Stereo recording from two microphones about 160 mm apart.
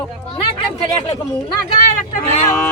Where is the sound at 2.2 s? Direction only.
45° left (ahead or behind).